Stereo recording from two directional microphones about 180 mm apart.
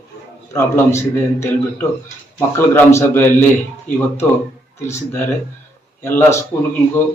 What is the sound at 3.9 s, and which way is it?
Speech, 45° left (ahead or behind).